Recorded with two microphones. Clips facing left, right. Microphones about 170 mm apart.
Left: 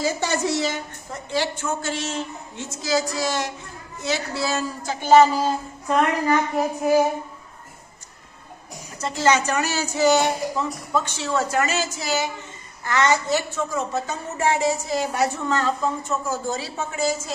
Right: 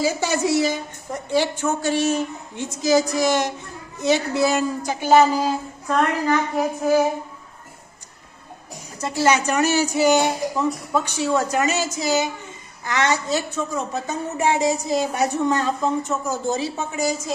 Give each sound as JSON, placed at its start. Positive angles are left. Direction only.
{"t": 0.0, "sound": "speech", "side_deg": -10}
{"t": 5.9, "sound": "a woman's voice", "side_deg": 5}
{"t": 9.0, "sound": "a woman's voice", "side_deg": -10}